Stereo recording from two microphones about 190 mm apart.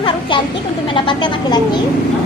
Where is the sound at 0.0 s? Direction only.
25° left (ahead or behind).